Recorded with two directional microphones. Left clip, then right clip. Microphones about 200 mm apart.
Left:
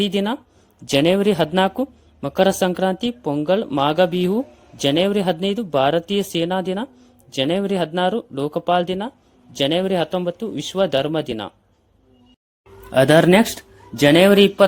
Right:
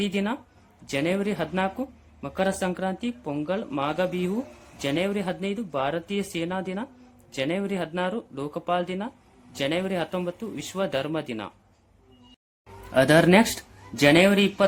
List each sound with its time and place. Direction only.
0.0 s speech: 30° left (ahead or behind)
12.9 s speech: 25° left (ahead or behind)